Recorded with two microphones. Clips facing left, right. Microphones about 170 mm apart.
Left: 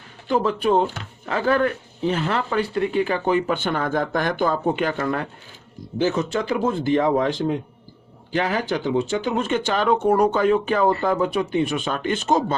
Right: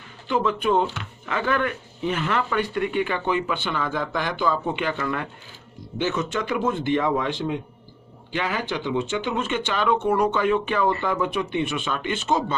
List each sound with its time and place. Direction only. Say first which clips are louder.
0.3 s speech: left 2 dB; 35° left (ahead or behind)